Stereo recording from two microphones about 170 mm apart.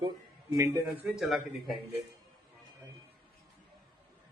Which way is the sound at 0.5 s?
20° right (ahead or behind).